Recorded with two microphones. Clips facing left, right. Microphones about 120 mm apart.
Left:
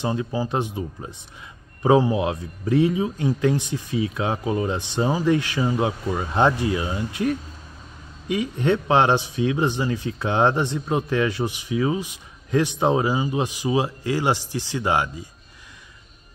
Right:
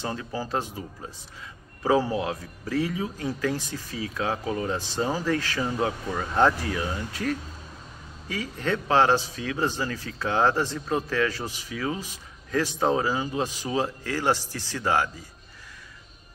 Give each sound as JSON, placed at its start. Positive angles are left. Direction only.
{"t": 0.0, "sound": "speech", "side_deg": 20}